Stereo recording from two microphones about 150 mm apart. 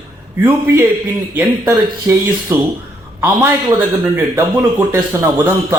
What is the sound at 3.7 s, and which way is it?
Speech, 20° right (ahead or behind).